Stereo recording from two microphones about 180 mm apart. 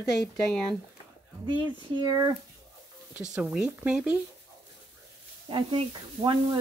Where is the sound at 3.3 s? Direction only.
5° right (ahead or behind).